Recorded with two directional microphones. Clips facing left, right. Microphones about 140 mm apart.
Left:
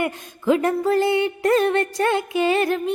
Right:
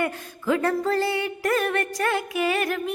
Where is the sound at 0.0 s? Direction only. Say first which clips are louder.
Left 3 dB; 20° left (ahead or behind).